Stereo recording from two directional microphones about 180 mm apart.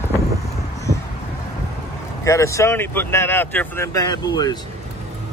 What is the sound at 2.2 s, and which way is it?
Speech, 15° left (ahead or behind).